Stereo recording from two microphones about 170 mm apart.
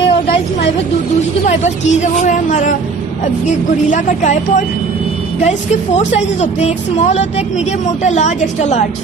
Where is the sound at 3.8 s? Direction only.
45° left (ahead or behind).